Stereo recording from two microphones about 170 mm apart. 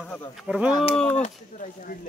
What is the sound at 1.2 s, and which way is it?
Speech, 50° left (ahead or behind).